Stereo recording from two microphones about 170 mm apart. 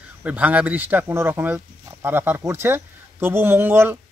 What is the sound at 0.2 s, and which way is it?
Speech, 10° right (ahead or behind).